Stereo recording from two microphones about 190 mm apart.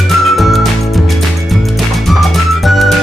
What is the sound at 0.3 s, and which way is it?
Music, centre (ahead or behind).